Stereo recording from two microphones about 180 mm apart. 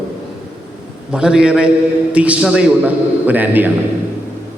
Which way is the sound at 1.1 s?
5° right (ahead or behind).